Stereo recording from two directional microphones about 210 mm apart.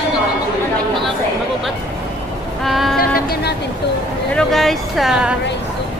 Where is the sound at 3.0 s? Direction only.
45° left (ahead or behind).